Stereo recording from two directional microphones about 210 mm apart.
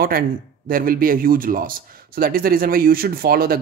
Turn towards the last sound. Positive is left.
turn(degrees=-45)  # may be behind; listen again after turning